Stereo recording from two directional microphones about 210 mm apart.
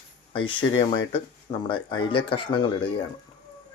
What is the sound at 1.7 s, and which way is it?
Speech, 25° left (ahead or behind).